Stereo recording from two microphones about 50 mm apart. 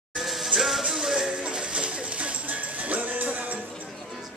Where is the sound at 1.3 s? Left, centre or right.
Centre.